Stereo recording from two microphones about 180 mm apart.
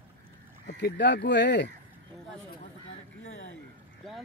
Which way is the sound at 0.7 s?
70° left (ahead or behind).